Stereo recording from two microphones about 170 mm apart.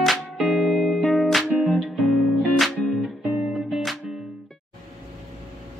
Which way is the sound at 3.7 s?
Centre (ahead or behind).